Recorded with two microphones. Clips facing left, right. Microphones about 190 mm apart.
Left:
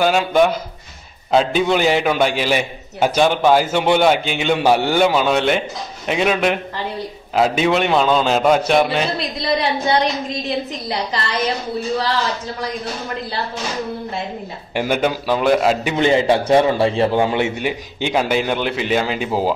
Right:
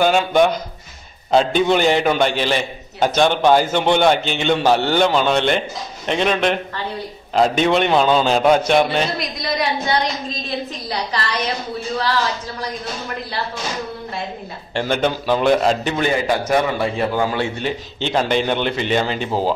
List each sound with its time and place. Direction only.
0.0 s a man's voice: centre (ahead or behind)
9.4 s a man's voice: 30° left (ahead or behind)
14.7 s a man's voice: 10° left (ahead or behind)
16.0 s a man's voice: 25° left (ahead or behind)
17.6 s a man's voice: 10° left (ahead or behind)